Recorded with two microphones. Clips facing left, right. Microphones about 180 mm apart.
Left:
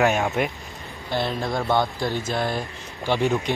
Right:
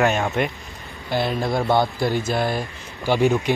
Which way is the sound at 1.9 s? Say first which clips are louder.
Right 4 dB; 5° right (ahead or behind).